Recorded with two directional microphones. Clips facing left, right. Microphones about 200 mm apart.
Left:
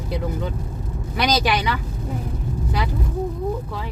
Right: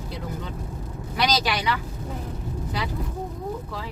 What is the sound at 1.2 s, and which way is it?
Speech, 55° left (ahead or behind).